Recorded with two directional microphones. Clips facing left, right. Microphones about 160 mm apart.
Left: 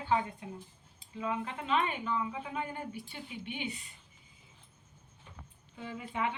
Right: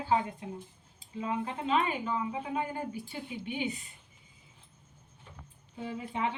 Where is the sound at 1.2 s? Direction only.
35° right (ahead or behind).